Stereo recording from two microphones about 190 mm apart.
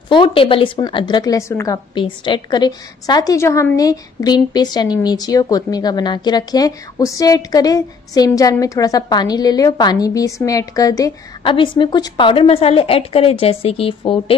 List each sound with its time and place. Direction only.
0.1 s a woman's voice: 30° left (ahead or behind)